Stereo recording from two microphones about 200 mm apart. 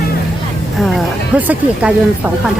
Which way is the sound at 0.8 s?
5° right (ahead or behind).